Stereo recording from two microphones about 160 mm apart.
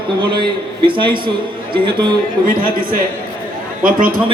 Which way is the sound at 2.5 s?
60° right (ahead or behind).